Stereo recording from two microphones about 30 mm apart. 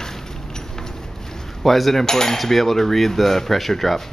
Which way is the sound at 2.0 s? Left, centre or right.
Centre.